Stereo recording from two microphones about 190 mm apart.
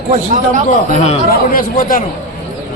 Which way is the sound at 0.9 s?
40° left (ahead or behind).